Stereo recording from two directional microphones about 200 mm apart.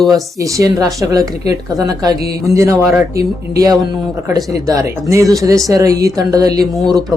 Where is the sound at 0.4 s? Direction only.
15° right (ahead or behind).